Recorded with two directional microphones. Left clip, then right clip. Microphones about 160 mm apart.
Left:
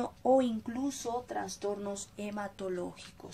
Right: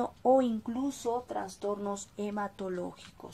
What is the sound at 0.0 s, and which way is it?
A woman's voice, 20° right (ahead or behind).